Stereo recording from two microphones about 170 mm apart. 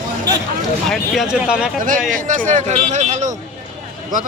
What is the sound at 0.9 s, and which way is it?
Speech, centre (ahead or behind).